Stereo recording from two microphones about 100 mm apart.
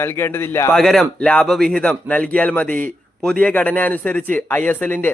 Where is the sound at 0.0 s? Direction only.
25° left (ahead or behind).